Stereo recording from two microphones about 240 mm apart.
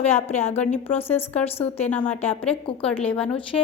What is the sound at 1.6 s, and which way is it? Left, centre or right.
Speech, left.